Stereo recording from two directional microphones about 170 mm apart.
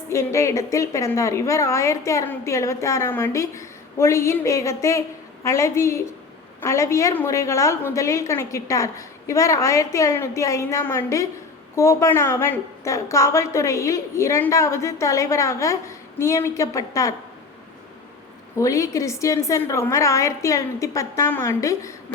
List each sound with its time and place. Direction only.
0.1 s a woman's voice: 15° left (ahead or behind)
18.6 s a woman's voice: 20° left (ahead or behind)